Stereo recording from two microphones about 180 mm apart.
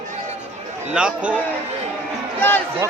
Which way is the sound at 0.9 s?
5° right (ahead or behind).